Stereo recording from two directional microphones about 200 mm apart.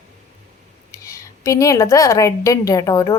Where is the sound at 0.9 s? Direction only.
15° left (ahead or behind).